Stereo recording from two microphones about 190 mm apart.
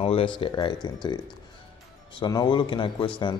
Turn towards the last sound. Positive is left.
turn(degrees=25)  # may be behind; listen again after turning